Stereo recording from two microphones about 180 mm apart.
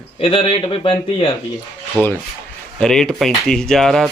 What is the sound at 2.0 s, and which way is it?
Speech, 10° left (ahead or behind).